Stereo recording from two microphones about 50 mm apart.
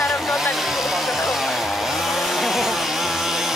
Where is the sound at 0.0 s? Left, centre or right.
Centre.